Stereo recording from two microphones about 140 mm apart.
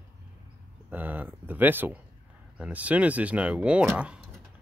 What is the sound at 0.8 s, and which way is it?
Speech, 15° right (ahead or behind).